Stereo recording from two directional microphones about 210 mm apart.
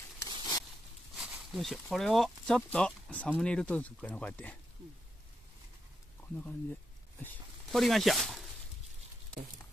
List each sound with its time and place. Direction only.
0.2 s a sound: 15° left (ahead or behind)
1.1 s speech: centre (ahead or behind)
6.2 s speech: 5° left (ahead or behind)